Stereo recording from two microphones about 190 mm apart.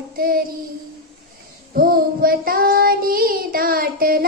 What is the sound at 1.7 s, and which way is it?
Child singing, 50° right (ahead or behind).